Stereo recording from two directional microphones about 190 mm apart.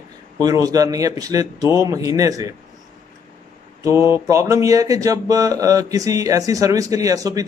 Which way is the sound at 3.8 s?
15° right (ahead or behind).